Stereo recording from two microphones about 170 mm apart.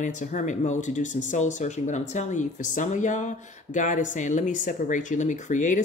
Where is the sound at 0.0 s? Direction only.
50° left (ahead or behind).